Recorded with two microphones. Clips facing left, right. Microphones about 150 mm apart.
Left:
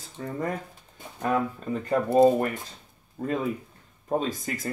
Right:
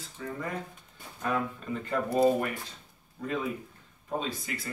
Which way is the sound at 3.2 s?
40° left (ahead or behind).